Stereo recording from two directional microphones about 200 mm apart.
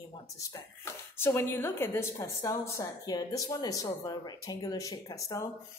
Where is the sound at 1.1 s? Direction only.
10° left (ahead or behind).